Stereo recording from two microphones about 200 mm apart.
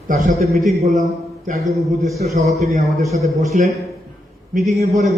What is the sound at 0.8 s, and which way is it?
A man's voice, 35° right (ahead or behind).